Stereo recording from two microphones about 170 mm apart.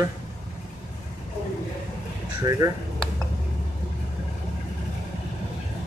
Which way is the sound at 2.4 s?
20° right (ahead or behind).